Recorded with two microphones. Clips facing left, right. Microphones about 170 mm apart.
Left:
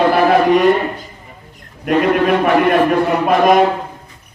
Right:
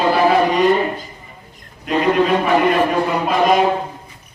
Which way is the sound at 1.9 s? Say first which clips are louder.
Left 2 dB; 55° left (ahead or behind).